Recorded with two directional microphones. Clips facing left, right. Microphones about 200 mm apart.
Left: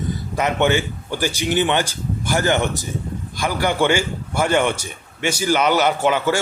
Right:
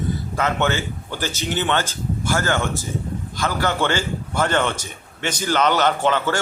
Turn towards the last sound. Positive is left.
turn(degrees=10)  # may be behind; listen again after turning